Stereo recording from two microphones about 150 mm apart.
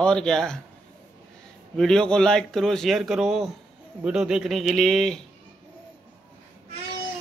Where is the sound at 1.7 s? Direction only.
5° left (ahead or behind).